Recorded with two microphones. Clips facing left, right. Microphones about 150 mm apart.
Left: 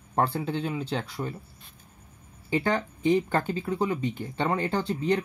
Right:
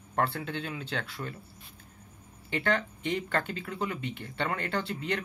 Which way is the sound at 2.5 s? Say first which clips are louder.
Left 3 dB; 35° left (ahead or behind).